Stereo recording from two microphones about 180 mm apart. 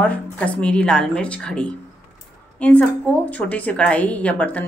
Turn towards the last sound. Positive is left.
turn(degrees=10)  # may be behind; listen again after turning